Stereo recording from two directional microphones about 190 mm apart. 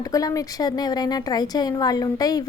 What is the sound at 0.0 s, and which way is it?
Speech, 20° left (ahead or behind).